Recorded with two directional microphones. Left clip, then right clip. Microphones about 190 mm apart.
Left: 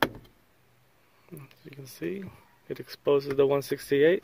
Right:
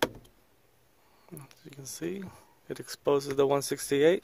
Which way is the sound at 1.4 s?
20° right (ahead or behind).